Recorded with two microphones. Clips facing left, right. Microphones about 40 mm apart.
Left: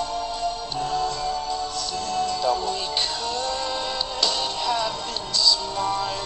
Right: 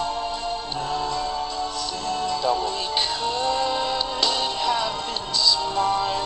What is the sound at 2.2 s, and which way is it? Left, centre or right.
Music, centre.